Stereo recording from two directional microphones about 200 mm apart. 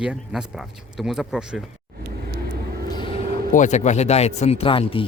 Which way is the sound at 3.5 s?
35° left (ahead or behind).